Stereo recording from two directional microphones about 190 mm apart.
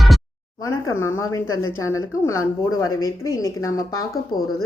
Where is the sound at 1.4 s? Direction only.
90° left.